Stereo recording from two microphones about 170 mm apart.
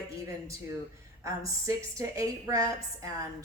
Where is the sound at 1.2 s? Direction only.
20° right (ahead or behind).